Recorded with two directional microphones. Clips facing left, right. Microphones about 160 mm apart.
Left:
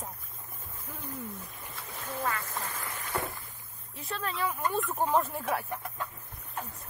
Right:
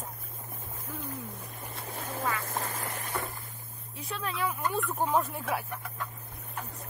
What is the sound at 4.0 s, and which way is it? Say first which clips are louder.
Speech: even; centre (ahead or behind).